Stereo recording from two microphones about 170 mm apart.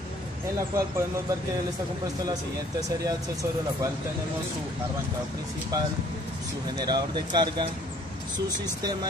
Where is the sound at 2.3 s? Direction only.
20° right (ahead or behind).